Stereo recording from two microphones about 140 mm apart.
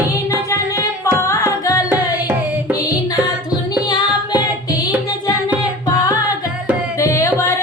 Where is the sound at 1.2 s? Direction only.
20° left (ahead or behind).